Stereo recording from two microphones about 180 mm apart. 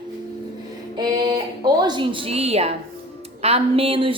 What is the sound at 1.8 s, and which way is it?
A woman's voice, 25° right (ahead or behind).